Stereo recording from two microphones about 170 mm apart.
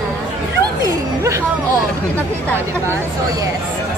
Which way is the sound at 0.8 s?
20° right (ahead or behind).